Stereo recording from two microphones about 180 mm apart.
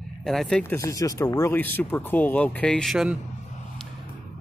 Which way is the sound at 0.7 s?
15° left (ahead or behind).